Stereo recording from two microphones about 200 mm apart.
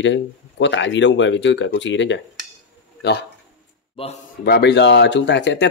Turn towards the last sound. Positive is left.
turn(degrees=60)  # may be behind; listen again after turning